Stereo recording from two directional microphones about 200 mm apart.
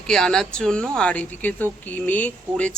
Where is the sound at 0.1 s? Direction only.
5° left (ahead or behind).